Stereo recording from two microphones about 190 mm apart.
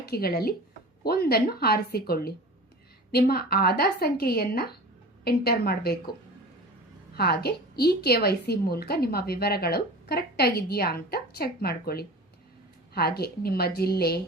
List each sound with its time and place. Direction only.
0.0 s a woman's voice: 55° left (ahead or behind)
7.2 s a woman's voice: 55° left (ahead or behind)